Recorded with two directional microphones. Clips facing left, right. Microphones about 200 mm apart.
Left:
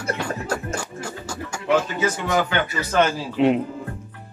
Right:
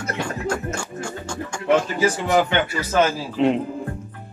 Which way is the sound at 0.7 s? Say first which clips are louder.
Right 1 dB; 5° left (ahead or behind).